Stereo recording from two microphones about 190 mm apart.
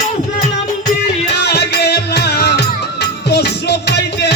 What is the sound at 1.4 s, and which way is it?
Music, 60° left (ahead or behind).